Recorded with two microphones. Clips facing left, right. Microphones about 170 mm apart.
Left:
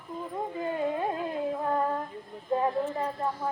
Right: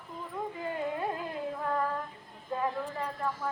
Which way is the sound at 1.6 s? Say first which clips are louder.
Left 2 dB; 25° left (ahead or behind).